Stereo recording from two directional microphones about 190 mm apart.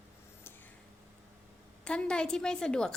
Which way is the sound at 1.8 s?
5° left (ahead or behind).